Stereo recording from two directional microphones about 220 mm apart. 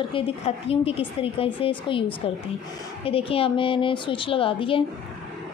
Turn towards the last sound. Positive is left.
turn(degrees=25)  # may be behind; listen again after turning